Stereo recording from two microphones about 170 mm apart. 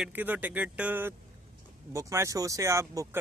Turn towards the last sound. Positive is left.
turn(degrees=-15)  # may be behind; listen again after turning